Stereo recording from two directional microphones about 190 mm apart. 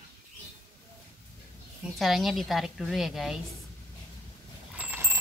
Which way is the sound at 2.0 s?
Centre (ahead or behind).